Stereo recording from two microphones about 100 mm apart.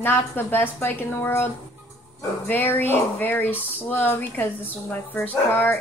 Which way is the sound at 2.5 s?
20° left (ahead or behind).